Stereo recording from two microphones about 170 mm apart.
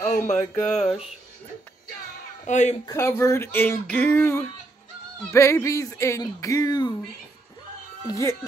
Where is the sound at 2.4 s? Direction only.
45° left (ahead or behind).